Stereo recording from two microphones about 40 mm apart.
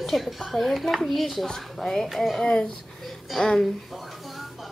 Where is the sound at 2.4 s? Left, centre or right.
Centre.